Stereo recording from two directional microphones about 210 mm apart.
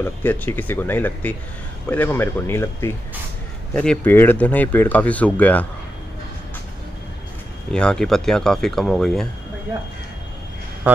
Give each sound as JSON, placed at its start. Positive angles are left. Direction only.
{"t": 0.0, "sound": "speech", "side_deg": 10}
{"t": 7.7, "sound": "speech", "side_deg": 5}